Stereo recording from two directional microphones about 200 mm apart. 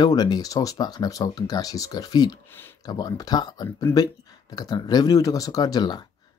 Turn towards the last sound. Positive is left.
turn(degrees=20)  # may be behind; listen again after turning